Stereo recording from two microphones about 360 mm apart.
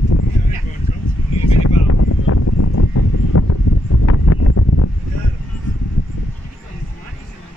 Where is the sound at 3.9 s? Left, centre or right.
Left.